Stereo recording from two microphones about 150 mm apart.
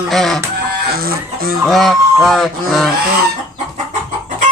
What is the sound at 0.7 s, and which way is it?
Chicken, 90° right.